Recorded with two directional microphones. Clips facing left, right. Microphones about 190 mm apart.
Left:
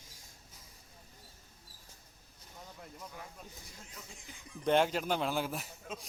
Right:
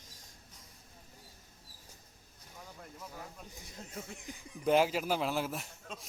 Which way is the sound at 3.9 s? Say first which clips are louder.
Right 11 dB; 60° right (ahead or behind).